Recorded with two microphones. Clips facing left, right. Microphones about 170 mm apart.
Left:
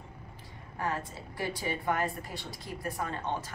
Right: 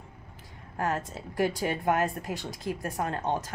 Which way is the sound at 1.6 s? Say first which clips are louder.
Right 5 dB; 90° right.